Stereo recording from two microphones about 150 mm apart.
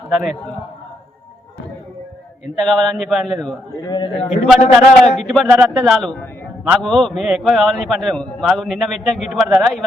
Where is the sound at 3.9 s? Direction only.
30° left (ahead or behind).